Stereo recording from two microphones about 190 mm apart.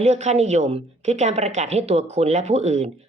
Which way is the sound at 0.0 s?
35° right (ahead or behind).